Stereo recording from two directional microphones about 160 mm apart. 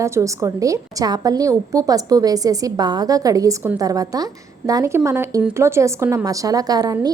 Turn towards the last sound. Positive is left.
turn(degrees=-25)  # may be behind; listen again after turning